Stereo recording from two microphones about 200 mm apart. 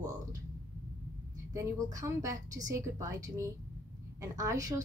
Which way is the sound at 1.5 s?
15° right (ahead or behind).